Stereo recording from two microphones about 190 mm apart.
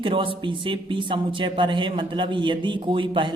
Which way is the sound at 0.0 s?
25° right (ahead or behind).